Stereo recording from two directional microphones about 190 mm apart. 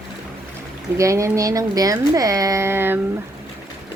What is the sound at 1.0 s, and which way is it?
Speech, 15° right (ahead or behind).